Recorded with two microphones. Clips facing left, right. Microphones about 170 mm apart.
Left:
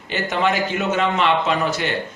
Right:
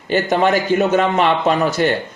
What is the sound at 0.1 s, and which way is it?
Speech, 40° right (ahead or behind).